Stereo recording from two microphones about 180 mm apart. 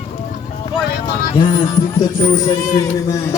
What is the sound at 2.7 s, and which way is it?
Speech, 25° left (ahead or behind).